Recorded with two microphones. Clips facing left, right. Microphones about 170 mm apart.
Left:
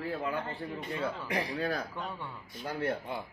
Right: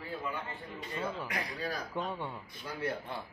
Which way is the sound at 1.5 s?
60° left (ahead or behind).